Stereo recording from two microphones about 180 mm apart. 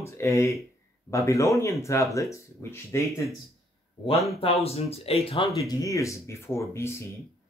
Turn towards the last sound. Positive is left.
turn(degrees=15)  # may be behind; listen again after turning